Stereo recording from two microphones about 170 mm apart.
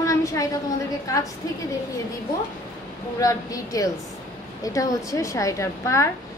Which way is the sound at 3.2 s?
20° left (ahead or behind).